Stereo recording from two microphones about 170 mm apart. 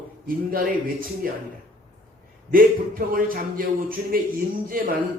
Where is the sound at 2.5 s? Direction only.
55° right (ahead or behind).